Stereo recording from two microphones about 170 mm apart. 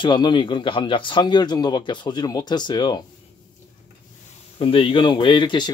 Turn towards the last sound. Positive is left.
turn(degrees=25)  # may be behind; listen again after turning